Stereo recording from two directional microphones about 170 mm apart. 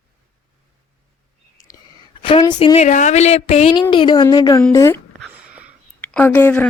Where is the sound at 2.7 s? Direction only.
45° left (ahead or behind).